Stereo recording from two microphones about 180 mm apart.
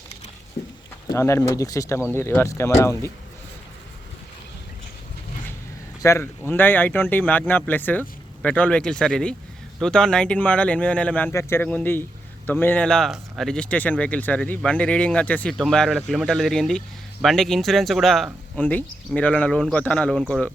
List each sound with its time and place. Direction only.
1.1 s speech: 15° left (ahead or behind)
6.0 s speech: 15° left (ahead or behind)